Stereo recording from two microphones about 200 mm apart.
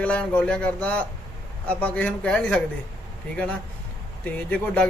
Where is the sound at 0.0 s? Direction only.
5° left (ahead or behind).